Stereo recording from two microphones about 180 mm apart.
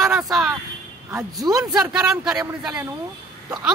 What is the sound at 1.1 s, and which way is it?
Speech, 15° right (ahead or behind).